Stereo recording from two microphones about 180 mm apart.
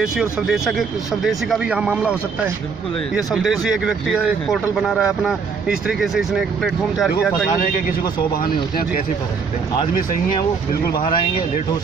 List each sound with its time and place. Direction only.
0.0 s speech: 5° right (ahead or behind)
10.7 s speech: 55° left (ahead or behind)